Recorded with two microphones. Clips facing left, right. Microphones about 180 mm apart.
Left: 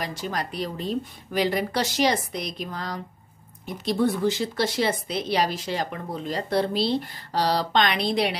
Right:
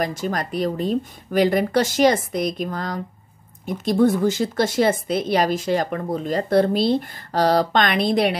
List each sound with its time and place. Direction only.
0.0 s speech: 45° right (ahead or behind)